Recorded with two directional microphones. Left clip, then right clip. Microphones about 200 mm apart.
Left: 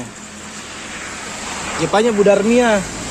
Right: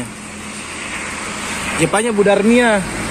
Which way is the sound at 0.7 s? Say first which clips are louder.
Right 5 dB; 55° left (ahead or behind).